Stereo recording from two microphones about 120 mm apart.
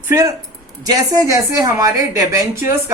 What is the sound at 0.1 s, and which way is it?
A woman's voice, 25° right (ahead or behind).